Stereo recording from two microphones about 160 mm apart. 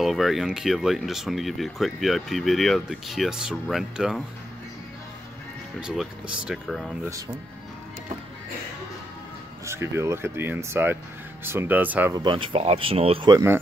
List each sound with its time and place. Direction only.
0.0 s speech: centre (ahead or behind)
5.8 s speech: 5° right (ahead or behind)
9.7 s speech: 15° right (ahead or behind)
12.1 s speech: 30° right (ahead or behind)
13.3 s speech: 20° right (ahead or behind)